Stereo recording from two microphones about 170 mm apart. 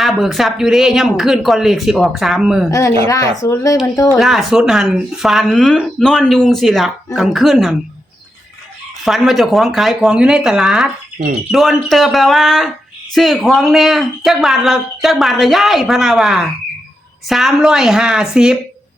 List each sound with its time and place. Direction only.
0.0 s speech: centre (ahead or behind)
2.6 s speech: 20° left (ahead or behind)
4.2 s speech: centre (ahead or behind)
9.0 s speech: centre (ahead or behind)